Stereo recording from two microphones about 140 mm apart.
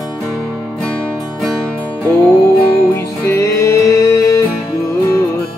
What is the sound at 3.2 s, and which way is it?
Music, 20° left (ahead or behind).